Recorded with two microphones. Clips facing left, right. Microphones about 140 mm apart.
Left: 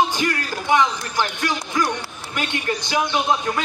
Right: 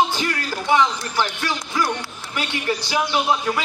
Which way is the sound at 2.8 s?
20° left (ahead or behind).